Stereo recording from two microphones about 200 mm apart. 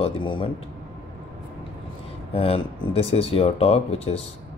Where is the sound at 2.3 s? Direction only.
30° left (ahead or behind).